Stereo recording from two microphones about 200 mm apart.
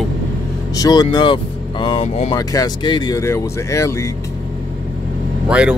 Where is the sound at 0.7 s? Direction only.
20° left (ahead or behind).